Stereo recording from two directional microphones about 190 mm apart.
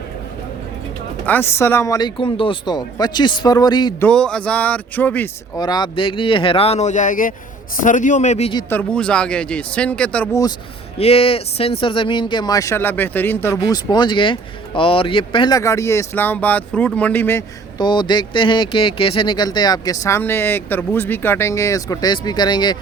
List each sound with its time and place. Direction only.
1.2 s speech: 10° left (ahead or behind)
4.0 s speech: 5° left (ahead or behind)
5.5 s a man's voice: 20° left (ahead or behind)
8.7 s speech: 5° left (ahead or behind)
10.9 s speech: 30° left (ahead or behind)